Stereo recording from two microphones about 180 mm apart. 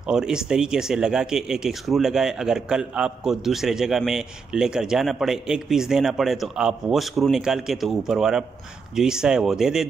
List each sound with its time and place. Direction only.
0.0 s speech: 5° right (ahead or behind)